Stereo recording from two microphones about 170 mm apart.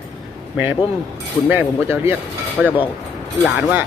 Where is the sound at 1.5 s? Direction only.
15° right (ahead or behind).